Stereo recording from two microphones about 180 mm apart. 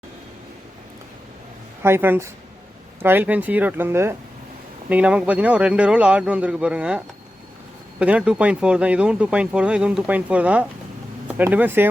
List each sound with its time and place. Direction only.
1.8 s speech: 10° right (ahead or behind)